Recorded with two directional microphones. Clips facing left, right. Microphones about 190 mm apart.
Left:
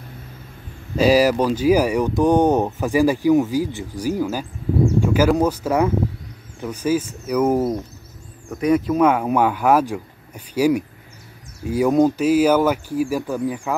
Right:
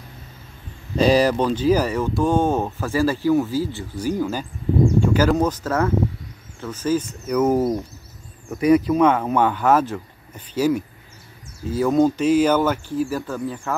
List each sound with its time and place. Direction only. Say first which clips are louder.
0.9 s speech: left 1 dB; 5° left (ahead or behind)